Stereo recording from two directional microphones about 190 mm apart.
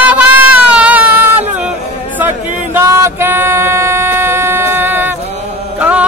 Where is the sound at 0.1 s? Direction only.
10° right (ahead or behind).